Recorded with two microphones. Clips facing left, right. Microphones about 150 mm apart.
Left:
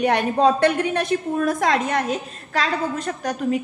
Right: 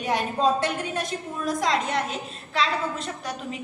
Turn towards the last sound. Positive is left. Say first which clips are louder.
# left 10 dB
turn(degrees=45)  # may be behind; listen again after turning